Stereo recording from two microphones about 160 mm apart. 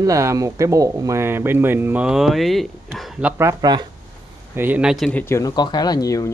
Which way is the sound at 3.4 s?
20° right (ahead or behind).